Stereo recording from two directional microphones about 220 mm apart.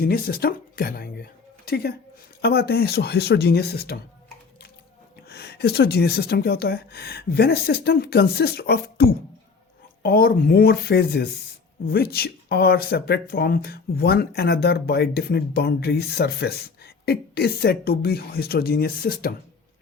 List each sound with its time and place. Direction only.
0.0 s speech: 45° left (ahead or behind)
5.3 s speech: 50° left (ahead or behind)